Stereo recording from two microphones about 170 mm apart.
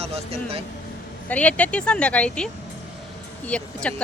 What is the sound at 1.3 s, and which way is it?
Speech, 10° left (ahead or behind).